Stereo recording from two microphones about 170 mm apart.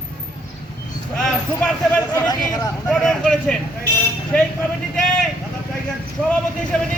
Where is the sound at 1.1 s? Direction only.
5° left (ahead or behind).